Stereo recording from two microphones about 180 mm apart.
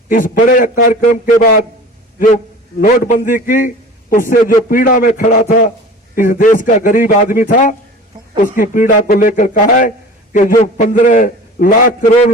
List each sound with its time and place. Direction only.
0.1 s a man's voice: 50° left (ahead or behind)